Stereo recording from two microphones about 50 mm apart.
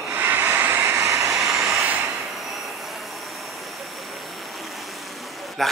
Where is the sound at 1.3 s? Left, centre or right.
Centre.